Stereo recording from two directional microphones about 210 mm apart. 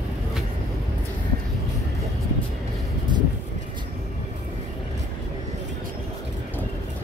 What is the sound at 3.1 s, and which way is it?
Vehicle, 20° right (ahead or behind).